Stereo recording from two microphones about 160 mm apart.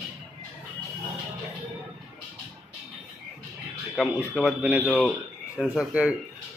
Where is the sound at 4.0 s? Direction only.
5° right (ahead or behind).